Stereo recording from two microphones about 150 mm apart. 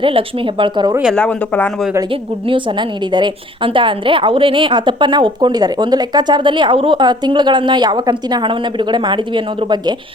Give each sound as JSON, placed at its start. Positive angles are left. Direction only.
{"t": 0.0, "sound": "a woman's voice", "side_deg": -35}
{"t": 1.1, "sound": "speech", "side_deg": 10}
{"t": 3.1, "sound": "a woman's voice", "side_deg": -30}